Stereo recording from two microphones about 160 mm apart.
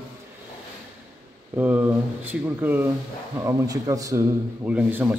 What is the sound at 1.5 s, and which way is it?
A man's voice, 10° right (ahead or behind).